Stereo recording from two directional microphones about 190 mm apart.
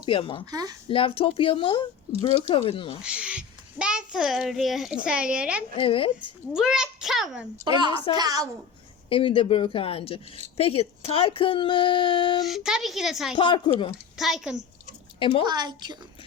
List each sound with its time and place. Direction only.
0.0 s speech: 25° left (ahead or behind)
0.5 s a woman's voice: 20° right (ahead or behind)
0.9 s speech: 30° left (ahead or behind)
3.0 s a child's voice: 5° right (ahead or behind)
5.7 s speech: 30° left (ahead or behind)
6.5 s a child's voice: 5° right (ahead or behind)
7.7 s a woman's voice: 25° right (ahead or behind)
9.0 s speech: 30° left (ahead or behind)
12.4 s a child's voice: centre (ahead or behind)
13.3 s speech: 25° left (ahead or behind)
14.2 s a child's voice: centre (ahead or behind)
15.2 s speech: 30° left (ahead or behind)
15.4 s a woman's voice: 20° right (ahead or behind)